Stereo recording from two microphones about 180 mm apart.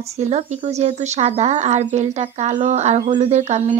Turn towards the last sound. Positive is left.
turn(degrees=-40)  # may be behind; listen again after turning